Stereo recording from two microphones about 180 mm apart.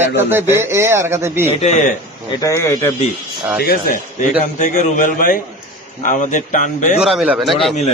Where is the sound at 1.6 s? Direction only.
40° left (ahead or behind).